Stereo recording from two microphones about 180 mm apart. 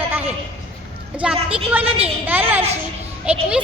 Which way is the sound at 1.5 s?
10° right (ahead or behind).